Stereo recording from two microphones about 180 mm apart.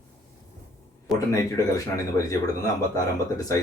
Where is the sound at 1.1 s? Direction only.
20° left (ahead or behind).